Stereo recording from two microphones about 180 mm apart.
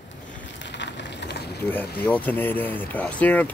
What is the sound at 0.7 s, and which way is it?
Rain, 80° left.